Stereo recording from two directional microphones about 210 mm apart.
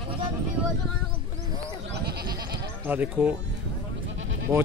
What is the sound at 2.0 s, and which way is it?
Goat, 50° right (ahead or behind).